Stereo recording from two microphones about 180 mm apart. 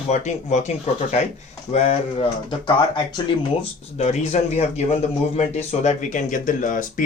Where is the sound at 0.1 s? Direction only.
40° left (ahead or behind).